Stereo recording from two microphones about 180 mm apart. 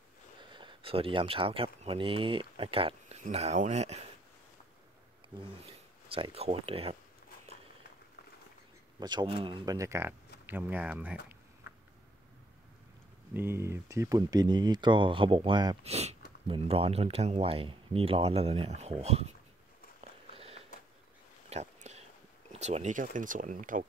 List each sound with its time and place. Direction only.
0.4 s speech: 25° right (ahead or behind)
5.7 s speech: 30° right (ahead or behind)
9.0 s speech: 25° right (ahead or behind); by 11.1 s 10° right (ahead or behind)
13.3 s speech: 15° right (ahead or behind)
15.8 s speech: 35° right (ahead or behind)
20.0 s a sound: 35° right (ahead or behind)
21.5 s whispering: 35° right (ahead or behind)
22.5 s speech: 40° right (ahead or behind)